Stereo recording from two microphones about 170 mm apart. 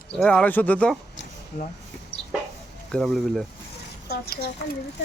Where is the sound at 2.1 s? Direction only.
35° left (ahead or behind).